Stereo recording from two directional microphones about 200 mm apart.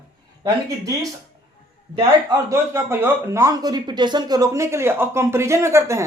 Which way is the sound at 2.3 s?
15° right (ahead or behind).